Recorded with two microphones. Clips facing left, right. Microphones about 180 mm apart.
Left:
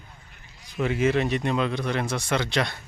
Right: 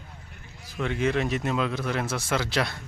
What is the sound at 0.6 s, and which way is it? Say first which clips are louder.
Speech: left 3 dB; centre (ahead or behind).